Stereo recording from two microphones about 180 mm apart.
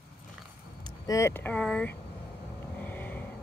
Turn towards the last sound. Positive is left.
turn(degrees=10)  # may be behind; listen again after turning